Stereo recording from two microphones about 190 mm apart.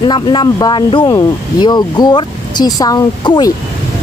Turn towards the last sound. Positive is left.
turn(degrees=20)  # may be behind; listen again after turning